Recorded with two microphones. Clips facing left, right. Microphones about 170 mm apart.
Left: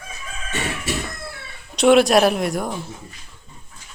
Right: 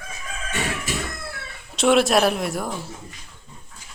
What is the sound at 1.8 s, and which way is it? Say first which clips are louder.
Speech: left 4 dB; centre (ahead or behind).